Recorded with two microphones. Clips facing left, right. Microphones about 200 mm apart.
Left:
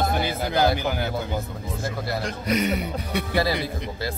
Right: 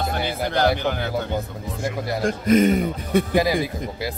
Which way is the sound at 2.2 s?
50° right (ahead or behind).